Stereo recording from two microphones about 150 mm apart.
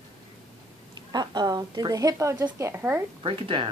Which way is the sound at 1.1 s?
25° right (ahead or behind).